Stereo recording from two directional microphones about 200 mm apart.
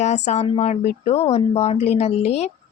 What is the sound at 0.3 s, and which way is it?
Speech, 30° left (ahead or behind).